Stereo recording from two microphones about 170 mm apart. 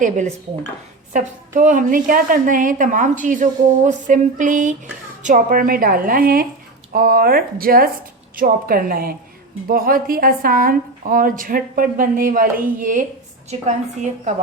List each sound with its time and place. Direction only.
1.1 s a woman's voice: 45° right (ahead or behind)